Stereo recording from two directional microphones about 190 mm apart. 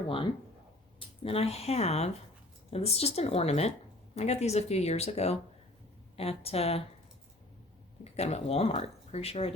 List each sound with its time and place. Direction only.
0.9 s speech: 30° left (ahead or behind)
8.1 s speech: 35° left (ahead or behind)